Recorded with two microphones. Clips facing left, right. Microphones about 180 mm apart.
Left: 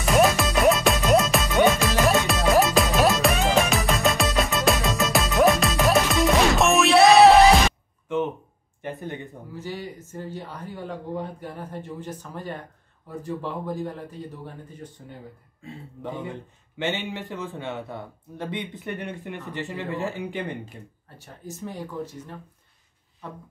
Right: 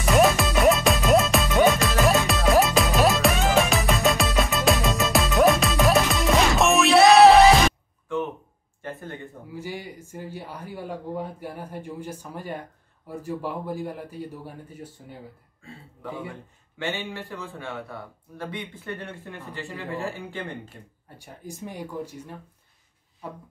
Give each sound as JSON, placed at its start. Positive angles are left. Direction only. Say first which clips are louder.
{"t": 0.0, "sound": "music", "louder": "even", "side_deg": 0}
{"t": 8.8, "sound": "a sound", "louder": "left 3 dB", "side_deg": 20}
{"t": 9.5, "sound": "speech", "louder": "left 1 dB", "side_deg": -10}
{"t": 15.6, "sound": "speech", "louder": "left 3 dB", "side_deg": 20}
{"t": 21.2, "sound": "speech", "louder": "left 1 dB", "side_deg": -15}